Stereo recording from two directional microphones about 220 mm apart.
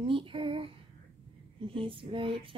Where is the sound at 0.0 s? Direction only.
25° right (ahead or behind).